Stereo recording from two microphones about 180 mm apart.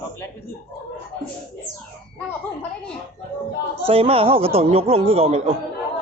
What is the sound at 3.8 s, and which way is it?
Speech, 30° right (ahead or behind).